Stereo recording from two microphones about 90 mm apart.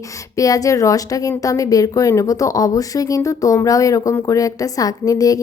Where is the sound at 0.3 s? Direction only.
40° left (ahead or behind).